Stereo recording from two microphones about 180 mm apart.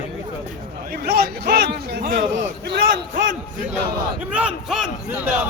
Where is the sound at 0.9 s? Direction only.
60° right (ahead or behind).